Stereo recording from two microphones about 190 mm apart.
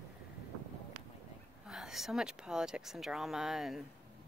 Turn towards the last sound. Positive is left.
turn(degrees=0)  # may be behind; listen again after turning